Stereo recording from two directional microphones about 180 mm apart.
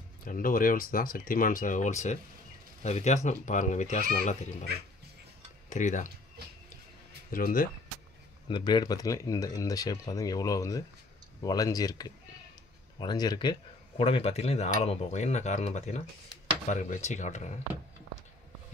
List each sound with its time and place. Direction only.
0.2 s speech: 50° left (ahead or behind)
5.7 s speech: 45° left (ahead or behind)
7.2 s speech: 50° left (ahead or behind)
8.5 s speech: 25° left (ahead or behind); by 17.6 s 40° left (ahead or behind)